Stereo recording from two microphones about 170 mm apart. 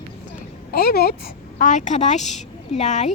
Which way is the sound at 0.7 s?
65° left (ahead or behind).